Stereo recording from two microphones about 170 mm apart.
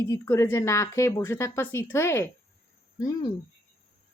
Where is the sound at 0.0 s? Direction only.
15° left (ahead or behind).